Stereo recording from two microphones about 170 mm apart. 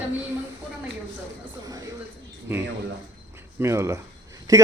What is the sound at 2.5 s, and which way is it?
A man's voice, 15° right (ahead or behind).